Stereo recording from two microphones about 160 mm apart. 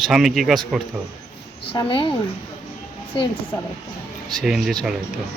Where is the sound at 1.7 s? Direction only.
30° left (ahead or behind).